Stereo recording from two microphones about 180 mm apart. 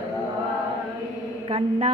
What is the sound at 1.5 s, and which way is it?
Speech, 35° right (ahead or behind).